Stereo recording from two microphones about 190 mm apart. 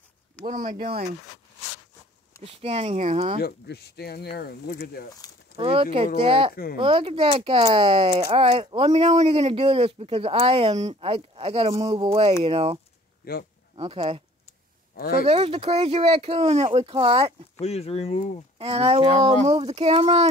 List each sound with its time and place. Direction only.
0.5 s speech: 45° right (ahead or behind)
2.4 s speech: 30° right (ahead or behind)
3.3 s speech: 55° left (ahead or behind)
5.6 s speech: 30° right (ahead or behind)
6.5 s speech: 55° left (ahead or behind)
6.8 s speech: 30° right (ahead or behind)
13.2 s speech: 55° left (ahead or behind)
13.7 s speech: 30° right (ahead or behind)
15.0 s speech: 50° left (ahead or behind)
15.2 s speech: 30° right (ahead or behind)
17.6 s speech: 35° left (ahead or behind)
18.6 s speech: 30° right (ahead or behind)